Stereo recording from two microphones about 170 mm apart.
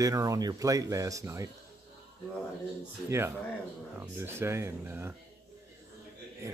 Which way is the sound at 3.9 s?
15° right (ahead or behind).